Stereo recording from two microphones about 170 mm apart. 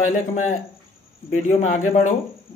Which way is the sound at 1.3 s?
50° left (ahead or behind).